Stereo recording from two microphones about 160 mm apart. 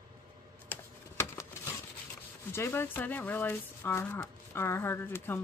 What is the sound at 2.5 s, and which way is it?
Speech, 15° left (ahead or behind).